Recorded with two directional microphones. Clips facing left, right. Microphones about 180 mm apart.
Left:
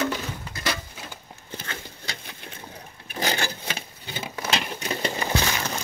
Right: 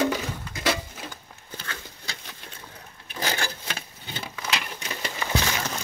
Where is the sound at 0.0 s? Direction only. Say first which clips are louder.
Right 2 dB; 20° right (ahead or behind).